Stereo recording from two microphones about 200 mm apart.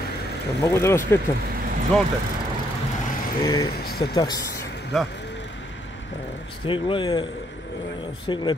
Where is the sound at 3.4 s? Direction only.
20° left (ahead or behind).